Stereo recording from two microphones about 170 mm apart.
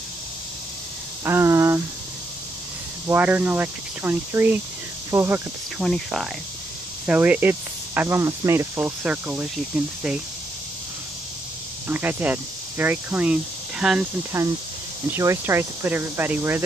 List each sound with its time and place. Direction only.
1.2 s a sound: 15° right (ahead or behind)
3.1 s speech: 10° right (ahead or behind)
5.8 s speech: centre (ahead or behind)
11.9 s speech: 10° right (ahead or behind)
14.3 s speech: 15° right (ahead or behind)